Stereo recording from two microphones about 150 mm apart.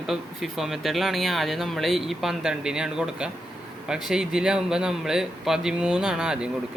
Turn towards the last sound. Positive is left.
turn(degrees=-5)  # may be behind; listen again after turning